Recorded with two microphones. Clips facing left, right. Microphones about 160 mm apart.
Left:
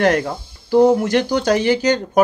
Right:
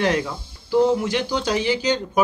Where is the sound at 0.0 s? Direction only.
50° left (ahead or behind).